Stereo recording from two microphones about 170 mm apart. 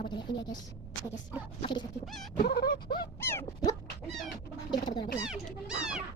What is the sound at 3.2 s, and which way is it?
Speech, 15° left (ahead or behind).